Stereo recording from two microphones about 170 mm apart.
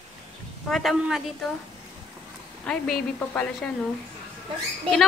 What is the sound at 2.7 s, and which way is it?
A woman's voice, 5° left (ahead or behind).